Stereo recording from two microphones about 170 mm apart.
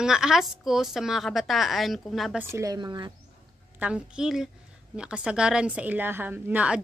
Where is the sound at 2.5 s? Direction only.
20° right (ahead or behind).